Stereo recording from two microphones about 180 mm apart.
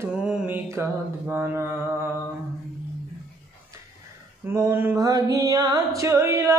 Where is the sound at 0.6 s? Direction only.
15° right (ahead or behind).